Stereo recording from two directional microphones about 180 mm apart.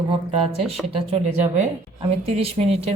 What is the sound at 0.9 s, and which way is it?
Speech, 40° right (ahead or behind).